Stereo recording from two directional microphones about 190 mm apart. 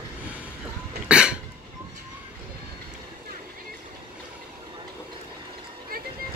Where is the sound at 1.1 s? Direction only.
5° right (ahead or behind).